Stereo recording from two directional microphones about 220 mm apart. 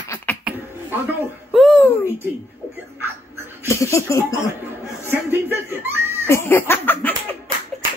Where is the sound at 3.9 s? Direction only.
15° left (ahead or behind).